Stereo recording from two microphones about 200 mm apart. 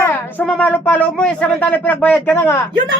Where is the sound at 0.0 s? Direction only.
10° left (ahead or behind).